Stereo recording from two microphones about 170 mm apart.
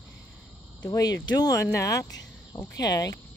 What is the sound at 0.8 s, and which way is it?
Speech, 20° left (ahead or behind).